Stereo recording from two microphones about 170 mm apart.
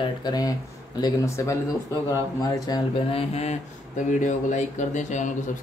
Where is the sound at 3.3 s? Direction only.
40° left (ahead or behind).